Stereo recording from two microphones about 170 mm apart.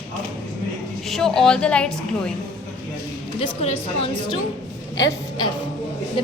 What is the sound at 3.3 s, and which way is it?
Speech, 40° left (ahead or behind).